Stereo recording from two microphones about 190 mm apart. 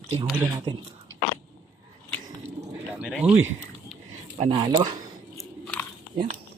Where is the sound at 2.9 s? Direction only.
5° right (ahead or behind).